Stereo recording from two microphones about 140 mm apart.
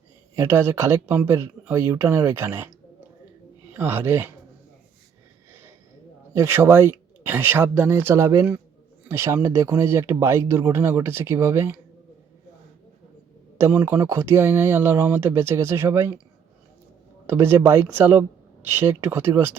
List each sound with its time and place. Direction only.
0.3 s speech: 20° right (ahead or behind)
5.5 s snort: 20° right (ahead or behind)
6.3 s speech: 15° right (ahead or behind)
13.6 s speech: 15° right (ahead or behind)
17.2 s speech: 15° right (ahead or behind)